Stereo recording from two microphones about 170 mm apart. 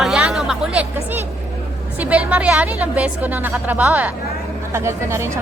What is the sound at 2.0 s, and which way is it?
A woman's voice, 10° right (ahead or behind).